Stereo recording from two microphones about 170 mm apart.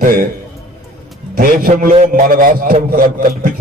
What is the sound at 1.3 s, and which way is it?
A man's voice, 55° right (ahead or behind).